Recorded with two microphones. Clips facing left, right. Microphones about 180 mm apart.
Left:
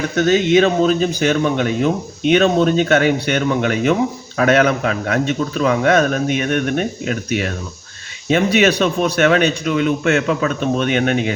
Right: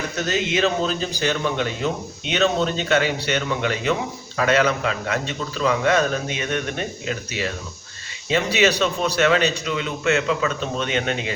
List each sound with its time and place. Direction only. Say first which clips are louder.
0.2 s a man's voice: left 9 dB; 55° left (ahead or behind)